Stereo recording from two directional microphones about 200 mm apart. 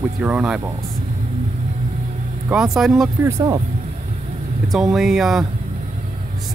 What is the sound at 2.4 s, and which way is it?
Speech, 5° right (ahead or behind).